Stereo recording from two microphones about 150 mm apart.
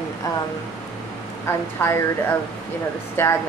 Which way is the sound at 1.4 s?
20° left (ahead or behind).